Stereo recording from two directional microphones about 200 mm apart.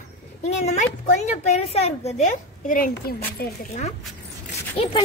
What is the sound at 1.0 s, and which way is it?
A woman's voice, 35° left (ahead or behind).